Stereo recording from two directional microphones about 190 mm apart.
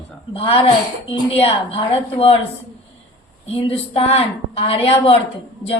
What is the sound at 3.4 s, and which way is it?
A woman's voice, 30° left (ahead or behind).